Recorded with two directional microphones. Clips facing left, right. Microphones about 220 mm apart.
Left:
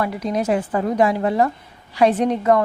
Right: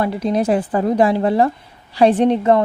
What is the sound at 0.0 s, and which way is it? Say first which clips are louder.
A woman's voice: right 4 dB; 30° right (ahead or behind).